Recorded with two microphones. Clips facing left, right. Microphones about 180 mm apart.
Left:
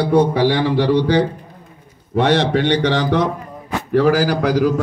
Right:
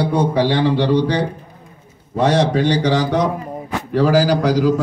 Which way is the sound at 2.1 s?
60° left (ahead or behind).